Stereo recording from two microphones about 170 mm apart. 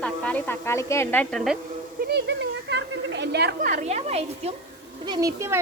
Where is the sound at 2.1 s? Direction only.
90° right; by 3.8 s 55° right (ahead or behind).